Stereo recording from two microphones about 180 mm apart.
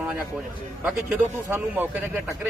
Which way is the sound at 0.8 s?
10° right (ahead or behind).